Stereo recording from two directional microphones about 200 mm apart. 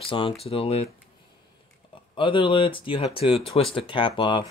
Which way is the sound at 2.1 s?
25° left (ahead or behind).